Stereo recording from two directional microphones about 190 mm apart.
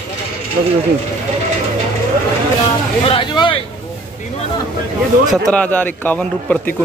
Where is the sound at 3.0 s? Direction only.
30° left (ahead or behind).